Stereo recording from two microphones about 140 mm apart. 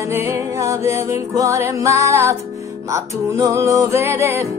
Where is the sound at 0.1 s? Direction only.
20° right (ahead or behind).